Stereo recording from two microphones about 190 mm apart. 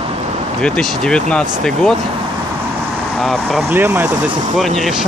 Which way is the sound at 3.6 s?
10° right (ahead or behind).